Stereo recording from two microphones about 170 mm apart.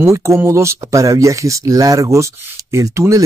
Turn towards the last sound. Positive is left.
turn(degrees=-20)  # may be behind; listen again after turning